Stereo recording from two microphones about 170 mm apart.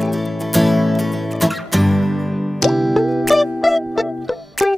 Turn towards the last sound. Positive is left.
turn(degrees=0)  # may be behind; listen again after turning